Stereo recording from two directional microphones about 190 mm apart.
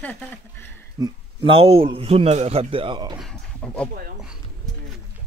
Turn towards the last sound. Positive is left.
turn(degrees=5)  # may be behind; listen again after turning